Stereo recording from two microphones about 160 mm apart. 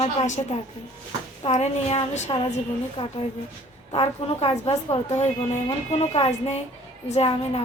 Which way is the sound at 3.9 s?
35° left (ahead or behind).